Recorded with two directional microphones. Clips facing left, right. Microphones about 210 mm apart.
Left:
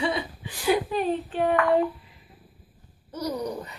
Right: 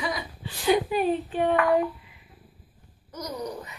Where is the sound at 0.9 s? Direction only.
Centre (ahead or behind).